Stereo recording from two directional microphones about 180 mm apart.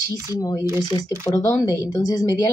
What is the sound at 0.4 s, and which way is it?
A woman's voice, 20° left (ahead or behind).